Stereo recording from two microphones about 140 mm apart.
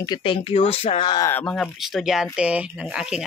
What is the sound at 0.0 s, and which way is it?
Speech, 35° left (ahead or behind).